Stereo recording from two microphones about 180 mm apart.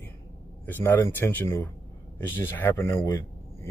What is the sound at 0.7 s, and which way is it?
Speech, 10° left (ahead or behind).